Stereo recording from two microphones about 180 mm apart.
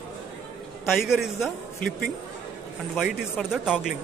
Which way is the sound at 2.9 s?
5° right (ahead or behind).